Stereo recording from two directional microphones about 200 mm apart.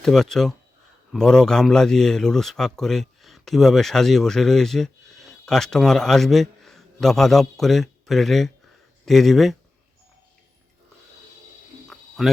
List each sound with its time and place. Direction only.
0.0 s a man's voice: centre (ahead or behind)
11.9 s bird: centre (ahead or behind)